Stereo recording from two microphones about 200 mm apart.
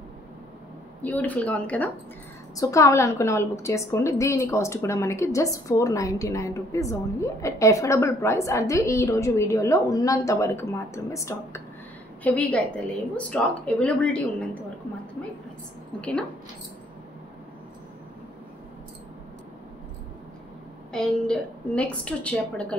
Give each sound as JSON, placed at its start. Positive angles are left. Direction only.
{"t": 1.0, "sound": "a woman's voice", "side_deg": 10}
{"t": 16.0, "sound": "a woman's voice", "side_deg": 5}
{"t": 20.9, "sound": "a woman's voice", "side_deg": 5}